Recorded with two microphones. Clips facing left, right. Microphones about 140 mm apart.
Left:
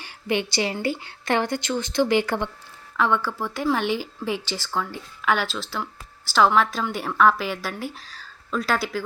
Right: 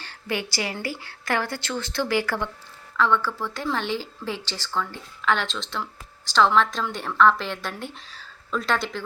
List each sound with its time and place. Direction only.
0.0 s speech: 15° left (ahead or behind)